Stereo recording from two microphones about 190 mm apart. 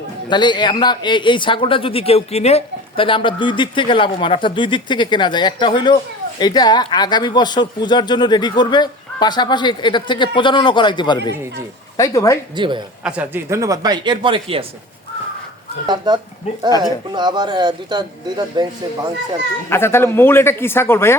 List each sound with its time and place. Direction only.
0.3 s a man's voice: 25° left (ahead or behind)
12.5 s a man's voice: 25° right (ahead or behind)
13.1 s a man's voice: 10° right (ahead or behind); by 14.6 s 30° right (ahead or behind)
16.1 s a man's voice: 25° right (ahead or behind)
19.7 s a man's voice: 15° left (ahead or behind)